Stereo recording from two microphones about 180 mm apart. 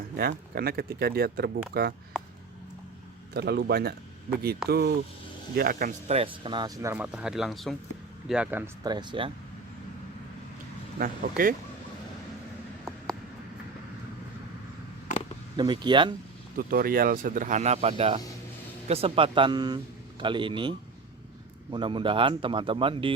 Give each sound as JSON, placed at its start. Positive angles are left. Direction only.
{"t": 0.2, "sound": "speech", "side_deg": -60}
{"t": 3.3, "sound": "speech", "side_deg": -65}
{"t": 6.1, "sound": "speech", "side_deg": -30}
{"t": 6.9, "sound": "speech", "side_deg": -5}
{"t": 8.8, "sound": "speech", "side_deg": -25}
{"t": 10.9, "sound": "speech", "side_deg": -50}
{"t": 15.5, "sound": "speech", "side_deg": -25}
{"t": 16.6, "sound": "speech", "side_deg": -55}